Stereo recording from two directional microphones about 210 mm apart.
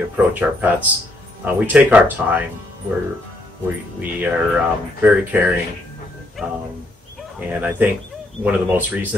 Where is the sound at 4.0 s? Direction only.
10° right (ahead or behind).